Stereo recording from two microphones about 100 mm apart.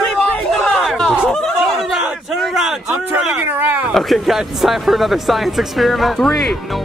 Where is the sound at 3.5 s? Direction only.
20° right (ahead or behind).